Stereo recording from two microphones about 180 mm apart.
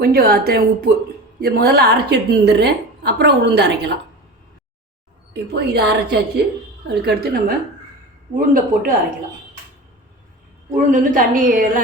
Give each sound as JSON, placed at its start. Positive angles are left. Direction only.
{"t": 0.0, "sound": "a woman's voice", "side_deg": -60}
{"t": 5.3, "sound": "a woman's voice", "side_deg": -65}
{"t": 10.8, "sound": "a woman's voice", "side_deg": -50}